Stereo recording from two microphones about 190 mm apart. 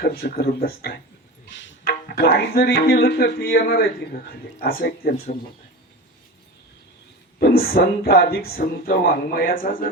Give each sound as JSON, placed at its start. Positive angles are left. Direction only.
{"t": 0.0, "sound": "speech", "side_deg": 55}
{"t": 1.8, "sound": "music", "side_deg": 55}
{"t": 4.6, "sound": "speech", "side_deg": 55}
{"t": 7.3, "sound": "speech", "side_deg": 55}